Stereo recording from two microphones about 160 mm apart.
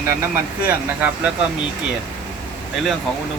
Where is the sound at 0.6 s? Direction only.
10° right (ahead or behind).